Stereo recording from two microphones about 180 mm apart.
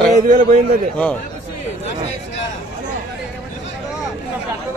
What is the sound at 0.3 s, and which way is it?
Speech, 50° right (ahead or behind).